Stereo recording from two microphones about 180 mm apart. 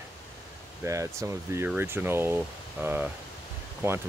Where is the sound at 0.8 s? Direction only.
15° right (ahead or behind).